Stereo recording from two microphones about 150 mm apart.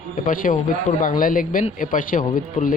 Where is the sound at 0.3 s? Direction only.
60° left (ahead or behind).